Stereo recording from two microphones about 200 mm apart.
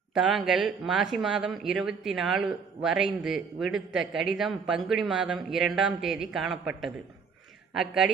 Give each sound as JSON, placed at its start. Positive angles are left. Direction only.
{"t": 0.1, "sound": "speech", "side_deg": 0}